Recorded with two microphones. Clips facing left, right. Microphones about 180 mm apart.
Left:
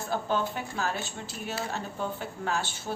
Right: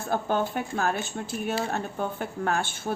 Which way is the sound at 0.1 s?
50° right (ahead or behind).